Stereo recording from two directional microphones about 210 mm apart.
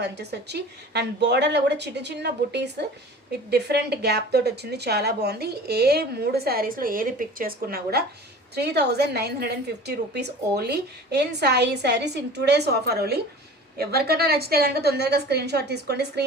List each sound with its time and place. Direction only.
0.0 s a woman's voice: 50° right (ahead or behind)